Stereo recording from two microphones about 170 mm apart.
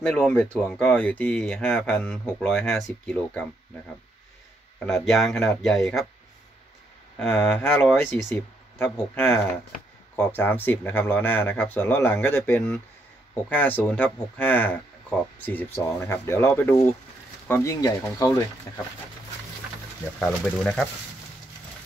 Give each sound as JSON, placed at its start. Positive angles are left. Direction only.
{"t": 0.0, "sound": "speech", "side_deg": 5}
{"t": 4.8, "sound": "speech", "side_deg": 0}
{"t": 7.2, "sound": "speech", "side_deg": 5}
{"t": 20.4, "sound": "speech", "side_deg": 5}